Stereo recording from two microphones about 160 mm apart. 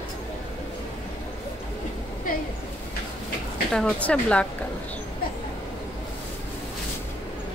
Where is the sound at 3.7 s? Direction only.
10° left (ahead or behind).